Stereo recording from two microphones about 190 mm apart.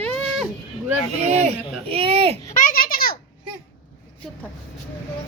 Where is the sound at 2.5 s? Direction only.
45° left (ahead or behind).